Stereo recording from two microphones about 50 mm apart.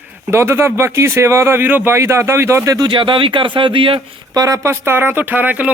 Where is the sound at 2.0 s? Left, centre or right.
Right.